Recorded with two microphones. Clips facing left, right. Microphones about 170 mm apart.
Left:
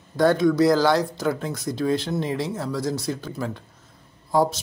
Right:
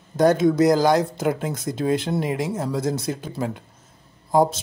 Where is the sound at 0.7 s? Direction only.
20° right (ahead or behind).